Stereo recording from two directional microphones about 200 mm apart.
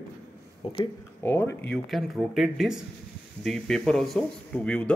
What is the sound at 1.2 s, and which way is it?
Speech, 10° left (ahead or behind).